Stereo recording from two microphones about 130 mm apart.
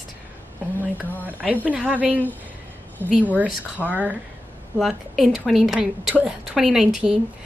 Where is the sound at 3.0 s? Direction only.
15° left (ahead or behind).